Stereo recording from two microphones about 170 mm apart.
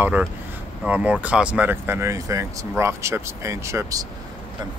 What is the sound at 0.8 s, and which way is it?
Speech, 10° right (ahead or behind).